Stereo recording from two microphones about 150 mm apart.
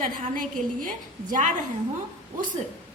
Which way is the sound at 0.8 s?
60° right (ahead or behind).